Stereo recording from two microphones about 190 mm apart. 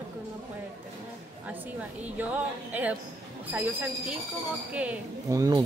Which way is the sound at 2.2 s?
10° right (ahead or behind).